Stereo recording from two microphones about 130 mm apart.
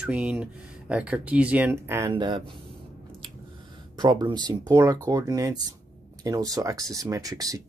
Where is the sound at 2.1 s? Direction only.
35° right (ahead or behind).